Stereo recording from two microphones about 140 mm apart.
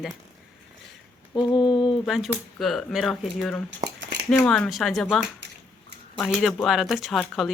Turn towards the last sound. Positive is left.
turn(degrees=0)  # may be behind; listen again after turning